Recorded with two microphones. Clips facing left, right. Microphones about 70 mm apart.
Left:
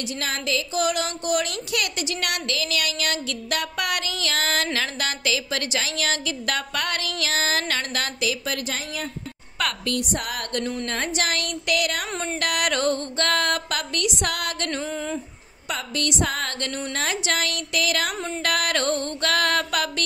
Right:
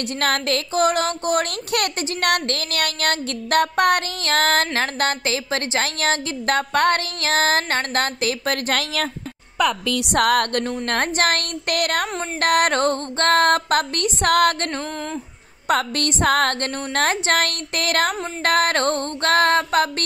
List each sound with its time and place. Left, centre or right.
0.2 s speech: right
9.9 s music: right
10.9 s speech: right
14.8 s speech: centre
15.7 s speech: right